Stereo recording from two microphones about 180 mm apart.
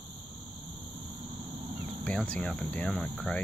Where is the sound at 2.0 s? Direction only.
10° left (ahead or behind).